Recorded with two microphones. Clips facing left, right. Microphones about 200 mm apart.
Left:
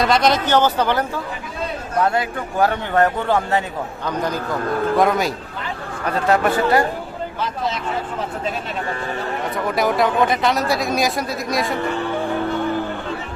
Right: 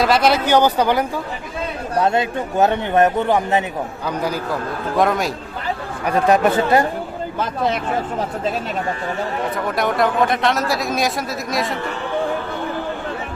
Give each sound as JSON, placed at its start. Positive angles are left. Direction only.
{"t": 0.0, "sound": "speech", "side_deg": -5}
{"t": 2.0, "sound": "speech", "side_deg": -25}
{"t": 4.9, "sound": "speech", "side_deg": 0}
{"t": 6.1, "sound": "speech", "side_deg": -15}
{"t": 9.6, "sound": "speech", "side_deg": 0}